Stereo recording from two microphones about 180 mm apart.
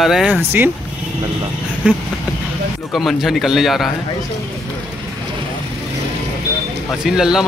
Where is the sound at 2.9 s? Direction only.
Centre (ahead or behind).